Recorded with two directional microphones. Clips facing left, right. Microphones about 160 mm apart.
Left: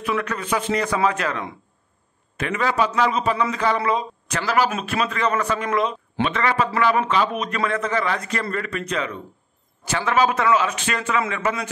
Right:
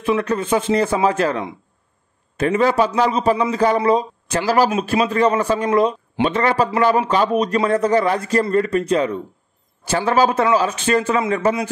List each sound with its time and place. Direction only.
0.0 s a man's voice: 30° right (ahead or behind)